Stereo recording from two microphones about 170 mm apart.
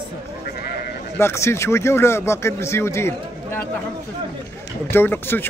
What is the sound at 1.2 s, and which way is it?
A man's voice, 15° left (ahead or behind).